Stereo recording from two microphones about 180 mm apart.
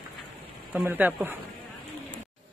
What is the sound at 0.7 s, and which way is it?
Speech, 10° right (ahead or behind).